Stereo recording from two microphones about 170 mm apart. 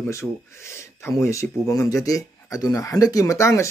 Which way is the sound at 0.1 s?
15° left (ahead or behind).